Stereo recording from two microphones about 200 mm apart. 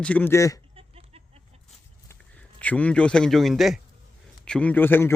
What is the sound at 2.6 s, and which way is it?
A man's voice, 5° left (ahead or behind).